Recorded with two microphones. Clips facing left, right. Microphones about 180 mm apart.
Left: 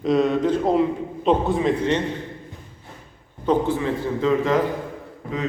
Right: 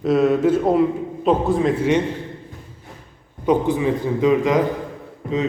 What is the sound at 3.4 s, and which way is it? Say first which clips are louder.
A man's voice: right 3 dB; 15° right (ahead or behind).